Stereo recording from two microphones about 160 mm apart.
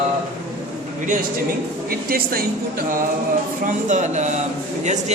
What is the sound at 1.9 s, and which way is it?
Speech, 65° right (ahead or behind).